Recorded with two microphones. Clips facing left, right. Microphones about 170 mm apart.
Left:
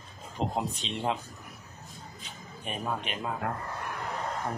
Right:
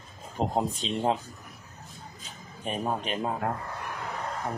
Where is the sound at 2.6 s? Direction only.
35° right (ahead or behind).